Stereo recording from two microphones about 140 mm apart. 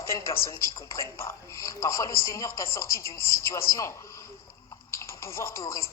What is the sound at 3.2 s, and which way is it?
Speech, 90° left.